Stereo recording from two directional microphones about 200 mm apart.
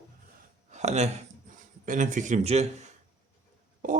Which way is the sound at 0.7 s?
35° right (ahead or behind).